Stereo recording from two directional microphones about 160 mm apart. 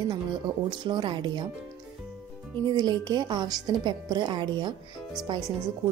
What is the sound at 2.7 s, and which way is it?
A woman's voice, 25° right (ahead or behind).